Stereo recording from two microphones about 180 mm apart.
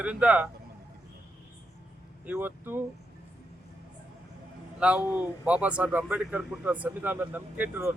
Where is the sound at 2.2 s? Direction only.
10° right (ahead or behind).